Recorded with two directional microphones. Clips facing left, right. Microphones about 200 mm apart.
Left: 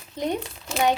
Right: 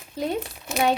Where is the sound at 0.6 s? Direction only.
15° right (ahead or behind).